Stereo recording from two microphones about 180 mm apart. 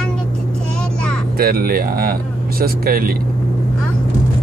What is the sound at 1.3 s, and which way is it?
Speech, 55° right (ahead or behind).